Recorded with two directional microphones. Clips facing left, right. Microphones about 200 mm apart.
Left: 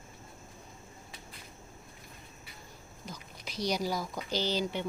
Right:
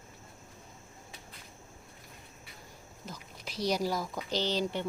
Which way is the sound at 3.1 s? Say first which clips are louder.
Even; 5° right (ahead or behind).